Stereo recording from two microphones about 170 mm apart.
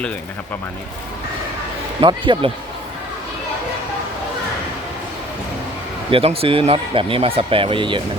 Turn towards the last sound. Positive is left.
turn(degrees=-30)  # may be behind; listen again after turning